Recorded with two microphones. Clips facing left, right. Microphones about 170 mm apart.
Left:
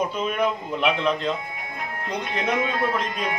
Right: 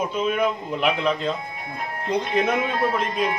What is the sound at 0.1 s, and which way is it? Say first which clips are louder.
A man's voice: right 2 dB; 5° right (ahead or behind).